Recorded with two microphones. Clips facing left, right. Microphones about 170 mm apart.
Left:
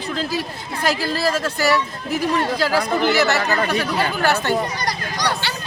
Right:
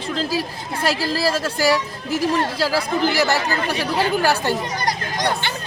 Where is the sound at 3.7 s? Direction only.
10° right (ahead or behind).